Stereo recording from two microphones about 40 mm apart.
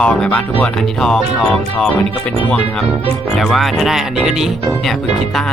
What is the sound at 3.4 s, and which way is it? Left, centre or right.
Speech, centre.